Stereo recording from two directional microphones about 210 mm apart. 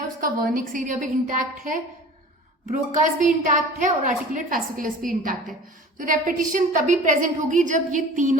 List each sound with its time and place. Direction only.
0.2 s a woman's voice: 40° right (ahead or behind)